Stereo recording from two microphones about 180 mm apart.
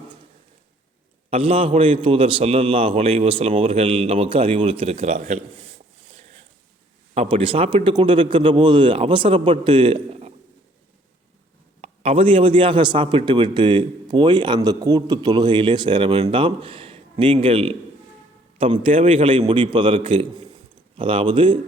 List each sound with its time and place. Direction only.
1.3 s a man's voice: 30° right (ahead or behind)
7.1 s a man's voice: 35° right (ahead or behind)
11.8 s a man's voice: 30° right (ahead or behind)